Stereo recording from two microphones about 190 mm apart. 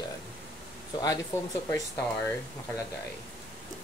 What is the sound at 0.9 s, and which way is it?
Speech, 20° left (ahead or behind).